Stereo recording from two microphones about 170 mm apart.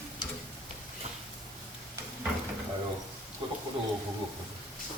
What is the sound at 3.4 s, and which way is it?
Bird, 30° right (ahead or behind).